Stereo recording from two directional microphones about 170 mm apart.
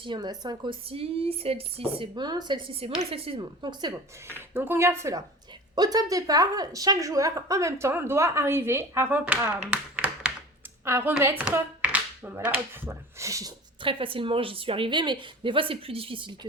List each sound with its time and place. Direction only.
0.0 s speech: 25° right (ahead or behind)
4.4 s a woman's voice: 10° right (ahead or behind)
13.8 s speech: 30° right (ahead or behind)